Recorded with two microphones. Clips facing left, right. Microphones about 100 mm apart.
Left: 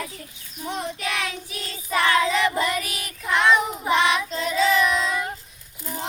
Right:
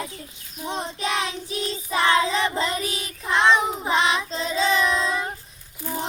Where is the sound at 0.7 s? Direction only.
25° right (ahead or behind).